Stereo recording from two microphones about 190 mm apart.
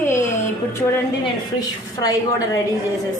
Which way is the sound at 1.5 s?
20° left (ahead or behind).